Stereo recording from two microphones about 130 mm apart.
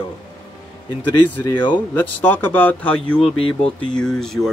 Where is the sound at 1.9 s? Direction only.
15° left (ahead or behind).